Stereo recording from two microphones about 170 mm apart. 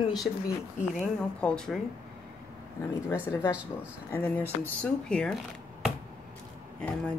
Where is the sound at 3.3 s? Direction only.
15° left (ahead or behind).